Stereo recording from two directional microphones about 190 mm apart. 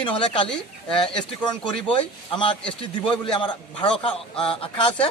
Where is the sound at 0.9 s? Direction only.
5° left (ahead or behind).